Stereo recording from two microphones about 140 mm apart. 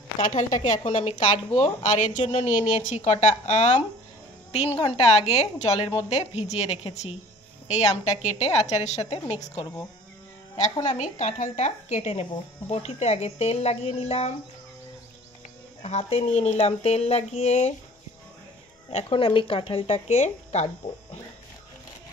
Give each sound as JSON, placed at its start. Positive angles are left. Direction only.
{"t": 0.2, "sound": "a woman's voice", "side_deg": 65}
{"t": 10.5, "sound": "speech", "side_deg": 35}
{"t": 11.0, "sound": "speech", "side_deg": 55}
{"t": 15.8, "sound": "speech", "side_deg": 45}
{"t": 18.9, "sound": "speech", "side_deg": 45}